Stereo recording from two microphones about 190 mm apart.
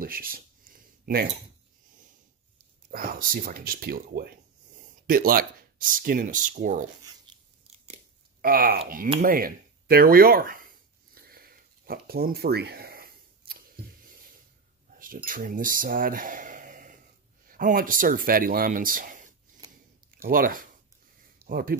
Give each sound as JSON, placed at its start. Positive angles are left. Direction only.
{"t": 0.0, "sound": "a sound", "side_deg": -50}
{"t": 2.9, "sound": "speech", "side_deg": -50}
{"t": 7.3, "sound": "biting", "side_deg": -25}
{"t": 8.4, "sound": "speech", "side_deg": -50}
{"t": 9.2, "sound": "a sound", "side_deg": -50}
{"t": 15.2, "sound": "speech", "side_deg": -45}